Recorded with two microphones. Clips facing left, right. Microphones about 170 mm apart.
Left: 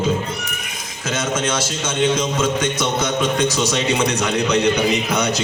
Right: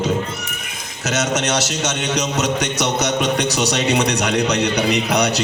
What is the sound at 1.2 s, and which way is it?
A man's voice, 75° right (ahead or behind).